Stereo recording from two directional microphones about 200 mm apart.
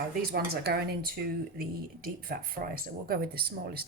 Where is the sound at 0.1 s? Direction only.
50° right (ahead or behind).